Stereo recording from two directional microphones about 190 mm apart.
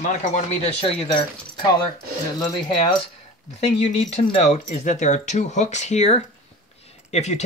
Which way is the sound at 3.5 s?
35° left (ahead or behind).